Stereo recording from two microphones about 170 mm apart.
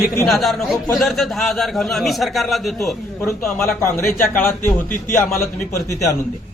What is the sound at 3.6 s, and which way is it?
Speech, 15° left (ahead or behind).